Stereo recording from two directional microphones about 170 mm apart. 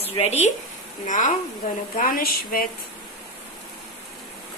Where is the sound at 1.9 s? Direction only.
55° left (ahead or behind).